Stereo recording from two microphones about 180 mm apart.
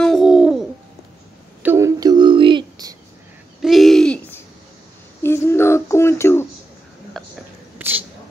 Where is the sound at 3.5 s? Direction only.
Centre (ahead or behind).